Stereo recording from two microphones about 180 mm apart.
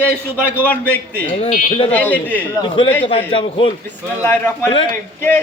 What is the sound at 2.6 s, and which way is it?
A man's voice, 30° left (ahead or behind).